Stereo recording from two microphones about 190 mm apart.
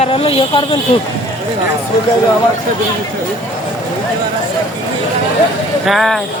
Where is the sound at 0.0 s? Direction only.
30° left (ahead or behind).